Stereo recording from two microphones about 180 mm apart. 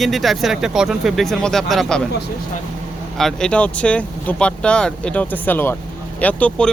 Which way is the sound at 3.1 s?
5° left (ahead or behind).